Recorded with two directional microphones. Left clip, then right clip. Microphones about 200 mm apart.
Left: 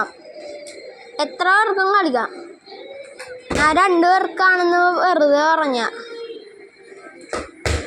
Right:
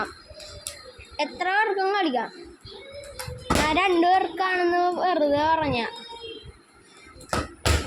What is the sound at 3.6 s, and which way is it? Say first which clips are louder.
Speech: left 7 dB; 30° left (ahead or behind).